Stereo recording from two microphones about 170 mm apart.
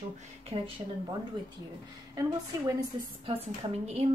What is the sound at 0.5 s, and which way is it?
Speech, 35° right (ahead or behind).